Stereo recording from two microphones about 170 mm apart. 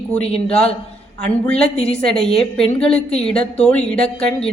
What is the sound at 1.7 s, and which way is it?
Speech, 40° left (ahead or behind).